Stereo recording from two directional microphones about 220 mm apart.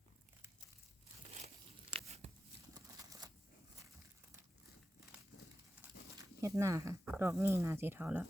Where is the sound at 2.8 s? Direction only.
15° right (ahead or behind).